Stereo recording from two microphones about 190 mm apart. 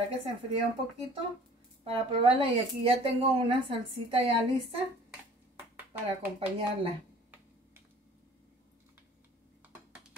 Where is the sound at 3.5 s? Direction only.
30° right (ahead or behind).